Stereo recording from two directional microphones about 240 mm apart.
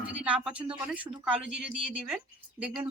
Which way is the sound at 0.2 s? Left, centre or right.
Centre.